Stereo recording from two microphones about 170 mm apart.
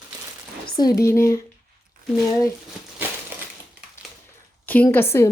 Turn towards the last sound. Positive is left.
turn(degrees=15)  # may be behind; listen again after turning